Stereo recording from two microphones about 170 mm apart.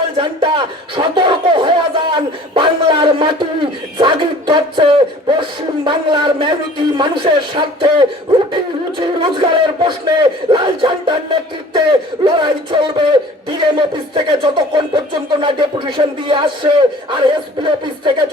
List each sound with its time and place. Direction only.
0.2 s a man's voice: 30° right (ahead or behind)